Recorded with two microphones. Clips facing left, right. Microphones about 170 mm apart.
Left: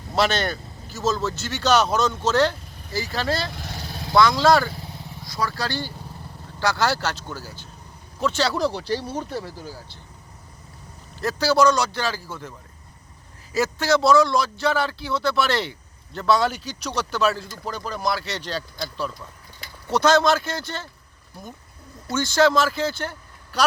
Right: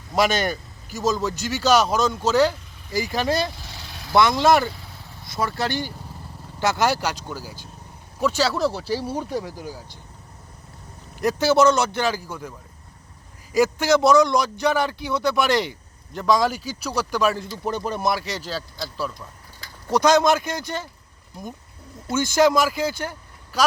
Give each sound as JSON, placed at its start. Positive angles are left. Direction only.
{"t": 0.2, "sound": "speech", "side_deg": -10}
{"t": 3.5, "sound": "vehicle", "side_deg": 60}
{"t": 3.8, "sound": "vehicle", "side_deg": 40}
{"t": 4.1, "sound": "speech", "side_deg": -20}
{"t": 11.2, "sound": "speech", "side_deg": -20}
{"t": 22.0, "sound": "speech", "side_deg": -20}